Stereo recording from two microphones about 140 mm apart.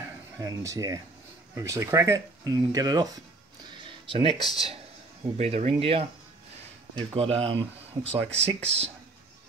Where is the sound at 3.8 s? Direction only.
45° right (ahead or behind).